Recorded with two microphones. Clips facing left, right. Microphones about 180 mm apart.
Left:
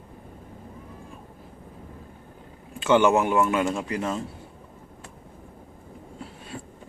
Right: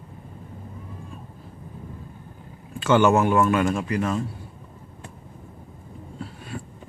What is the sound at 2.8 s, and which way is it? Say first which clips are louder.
Speech: right 1 dB; 15° left (ahead or behind).